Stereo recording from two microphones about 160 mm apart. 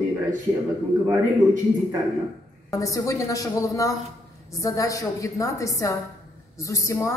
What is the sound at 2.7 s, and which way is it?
A woman's voice, 20° left (ahead or behind).